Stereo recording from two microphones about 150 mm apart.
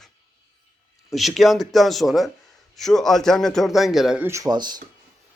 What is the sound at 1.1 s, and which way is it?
A man's voice, centre (ahead or behind).